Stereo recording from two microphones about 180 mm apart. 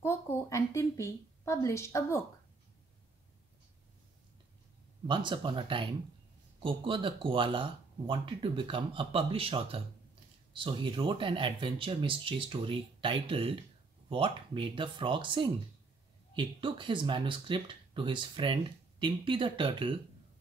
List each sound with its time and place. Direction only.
0.0 s a woman's voice: 15° left (ahead or behind)
5.0 s speech: 25° right (ahead or behind)